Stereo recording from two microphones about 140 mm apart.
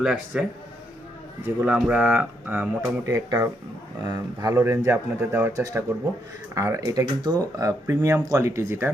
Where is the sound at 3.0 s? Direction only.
20° right (ahead or behind).